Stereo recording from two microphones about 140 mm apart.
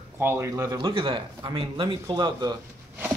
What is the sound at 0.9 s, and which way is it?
Speech, 40° right (ahead or behind).